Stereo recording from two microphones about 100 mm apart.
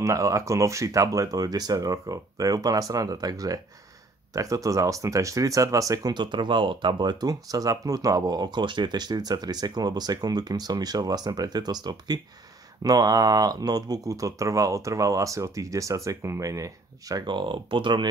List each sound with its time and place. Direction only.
0.0 s speech: 30° right (ahead or behind)
6.1 s speech: 50° right (ahead or behind); by 17.2 s 35° right (ahead or behind)
17.3 s speech: 50° right (ahead or behind)